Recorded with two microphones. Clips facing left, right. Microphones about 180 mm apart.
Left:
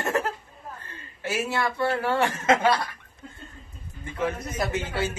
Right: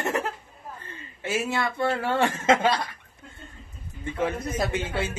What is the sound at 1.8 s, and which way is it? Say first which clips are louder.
Speech: even; 25° right (ahead or behind).